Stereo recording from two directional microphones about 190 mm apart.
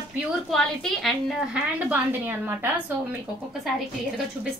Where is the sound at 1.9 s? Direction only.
10° right (ahead or behind).